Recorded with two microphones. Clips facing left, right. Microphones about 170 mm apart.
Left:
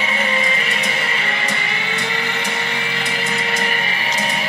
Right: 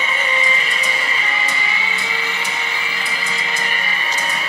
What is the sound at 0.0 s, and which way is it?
Music, 65° left (ahead or behind).